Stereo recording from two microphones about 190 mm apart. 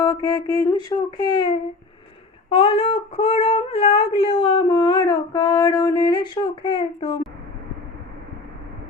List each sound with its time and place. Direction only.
0.0 s child singing: 20° left (ahead or behind)